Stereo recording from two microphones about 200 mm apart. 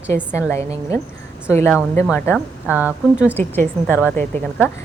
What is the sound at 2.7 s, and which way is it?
Speech, 10° right (ahead or behind).